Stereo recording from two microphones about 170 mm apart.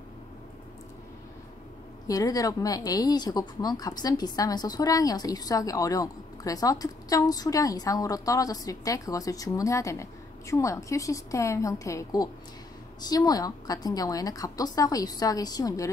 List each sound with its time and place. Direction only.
2.0 s speech: 20° left (ahead or behind)